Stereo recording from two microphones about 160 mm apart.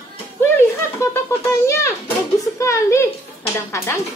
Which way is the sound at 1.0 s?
20° left (ahead or behind).